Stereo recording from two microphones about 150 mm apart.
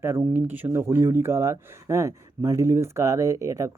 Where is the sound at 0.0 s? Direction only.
15° right (ahead or behind).